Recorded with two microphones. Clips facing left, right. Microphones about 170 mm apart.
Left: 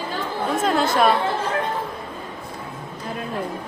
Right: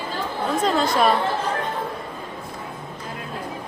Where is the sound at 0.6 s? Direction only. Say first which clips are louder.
Left 1 dB; centre (ahead or behind).